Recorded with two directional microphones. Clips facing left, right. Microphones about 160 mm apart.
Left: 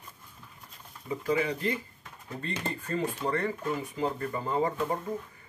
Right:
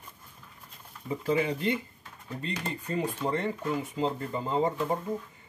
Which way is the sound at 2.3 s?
15° right (ahead or behind).